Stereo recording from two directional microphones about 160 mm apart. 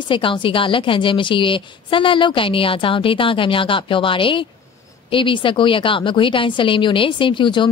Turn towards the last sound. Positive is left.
turn(degrees=30)  # may be behind; listen again after turning